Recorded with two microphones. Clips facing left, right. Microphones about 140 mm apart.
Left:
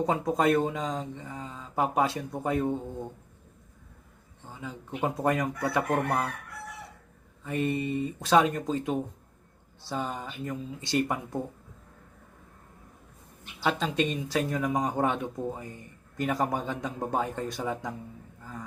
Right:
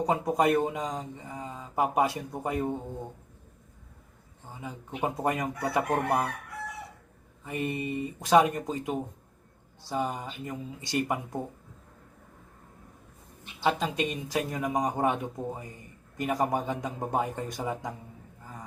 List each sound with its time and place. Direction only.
0.0 s speech: 15° right (ahead or behind)
4.6 s speech: 15° right (ahead or behind)
7.4 s speech: 15° right (ahead or behind)
13.6 s speech: 15° right (ahead or behind)